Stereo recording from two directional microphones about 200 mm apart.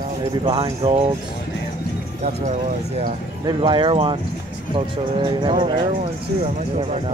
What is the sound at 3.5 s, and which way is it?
Speech, 25° right (ahead or behind).